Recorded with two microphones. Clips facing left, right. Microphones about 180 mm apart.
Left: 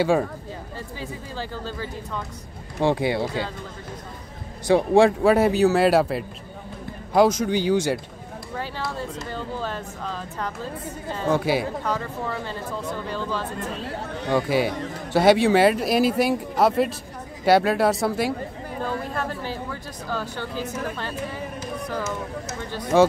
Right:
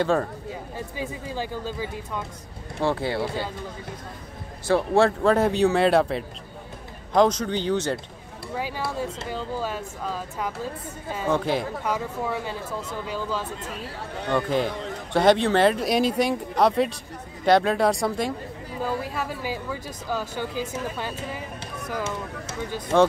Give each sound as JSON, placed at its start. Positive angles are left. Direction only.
{"t": 0.0, "sound": "speech", "side_deg": 10}
{"t": 0.7, "sound": "speech", "side_deg": -15}
{"t": 2.8, "sound": "speech", "side_deg": 15}
{"t": 4.6, "sound": "speech", "side_deg": 15}
{"t": 8.5, "sound": "speech", "side_deg": -10}
{"t": 11.3, "sound": "speech", "side_deg": 5}
{"t": 11.8, "sound": "speech", "side_deg": -10}
{"t": 14.3, "sound": "speech", "side_deg": 10}
{"t": 18.9, "sound": "speech", "side_deg": -10}
{"t": 22.9, "sound": "speech", "side_deg": 5}